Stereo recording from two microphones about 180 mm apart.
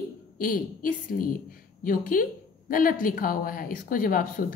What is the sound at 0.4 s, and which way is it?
A woman's voice, 50° left (ahead or behind).